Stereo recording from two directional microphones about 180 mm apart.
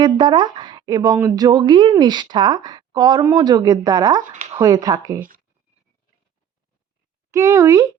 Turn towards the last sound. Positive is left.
turn(degrees=-20)  # may be behind; listen again after turning